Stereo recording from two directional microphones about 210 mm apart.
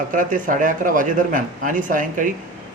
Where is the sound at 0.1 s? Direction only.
40° right (ahead or behind).